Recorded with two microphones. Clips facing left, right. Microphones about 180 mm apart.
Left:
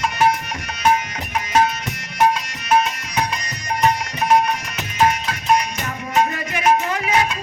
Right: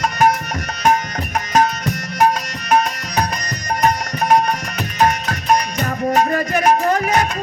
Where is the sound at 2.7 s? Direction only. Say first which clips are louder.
Right 1 dB; 40° right (ahead or behind).